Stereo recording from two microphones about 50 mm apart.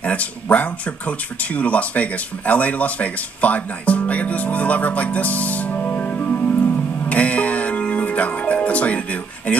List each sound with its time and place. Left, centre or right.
0.0 s speech: left